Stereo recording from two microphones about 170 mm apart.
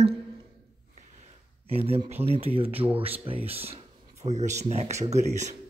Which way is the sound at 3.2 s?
35° right (ahead or behind).